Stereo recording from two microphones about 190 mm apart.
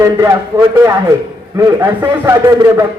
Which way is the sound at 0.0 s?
15° right (ahead or behind).